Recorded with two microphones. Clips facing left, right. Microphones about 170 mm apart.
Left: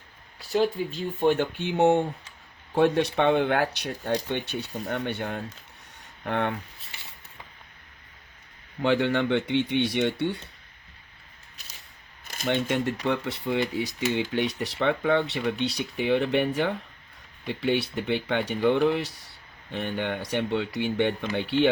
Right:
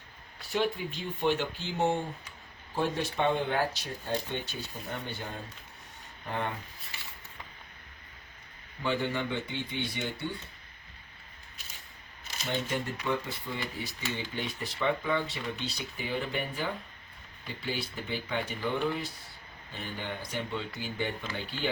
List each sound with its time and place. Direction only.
0.5 s speech: 40° left (ahead or behind); by 6.5 s 70° left (ahead or behind)
8.8 s speech: 70° left (ahead or behind)
12.5 s speech: 85° left
19.7 s speech: 70° left (ahead or behind)